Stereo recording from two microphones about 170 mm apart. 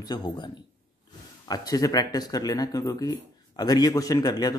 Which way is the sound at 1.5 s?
20° left (ahead or behind).